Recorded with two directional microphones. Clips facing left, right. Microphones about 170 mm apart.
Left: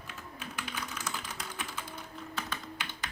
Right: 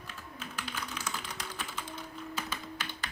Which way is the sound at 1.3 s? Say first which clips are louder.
Even; centre (ahead or behind).